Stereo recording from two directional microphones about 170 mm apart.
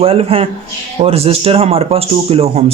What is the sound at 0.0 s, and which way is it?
Speech, 35° right (ahead or behind).